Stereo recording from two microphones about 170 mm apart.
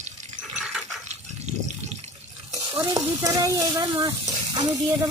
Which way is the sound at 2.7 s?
15° right (ahead or behind).